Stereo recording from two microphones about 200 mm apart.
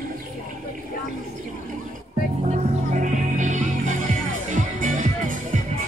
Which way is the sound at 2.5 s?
40° right (ahead or behind).